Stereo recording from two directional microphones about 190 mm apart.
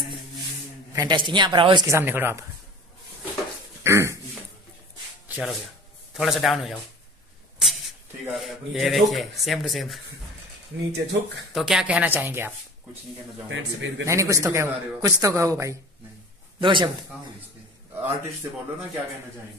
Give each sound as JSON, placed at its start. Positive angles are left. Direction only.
{"t": 0.9, "sound": "a woman's voice", "side_deg": -25}
{"t": 3.8, "sound": "a sound", "side_deg": -15}
{"t": 5.3, "sound": "speech", "side_deg": 0}
{"t": 10.9, "sound": "speech", "side_deg": -60}
{"t": 11.5, "sound": "a man's voice", "side_deg": -5}
{"t": 13.5, "sound": "a man's voice", "side_deg": -75}
{"t": 14.0, "sound": "a man's voice", "side_deg": -15}
{"t": 17.9, "sound": "a man's voice", "side_deg": -10}